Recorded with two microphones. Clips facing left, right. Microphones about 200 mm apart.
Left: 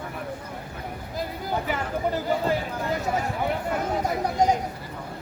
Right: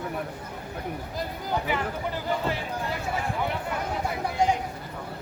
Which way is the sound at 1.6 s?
40° left (ahead or behind).